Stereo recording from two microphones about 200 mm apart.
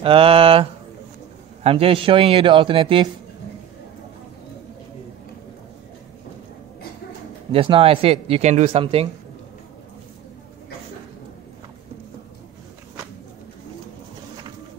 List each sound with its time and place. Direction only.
0.0 s speech: 25° right (ahead or behind)
7.5 s speech: 25° right (ahead or behind)